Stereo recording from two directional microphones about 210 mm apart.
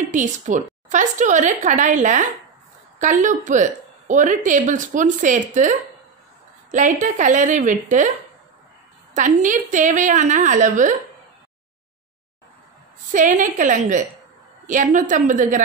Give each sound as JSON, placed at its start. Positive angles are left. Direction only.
{"t": 0.0, "sound": "a woman's voice", "side_deg": -35}
{"t": 9.1, "sound": "a woman's voice", "side_deg": -35}
{"t": 13.1, "sound": "a woman's voice", "side_deg": -40}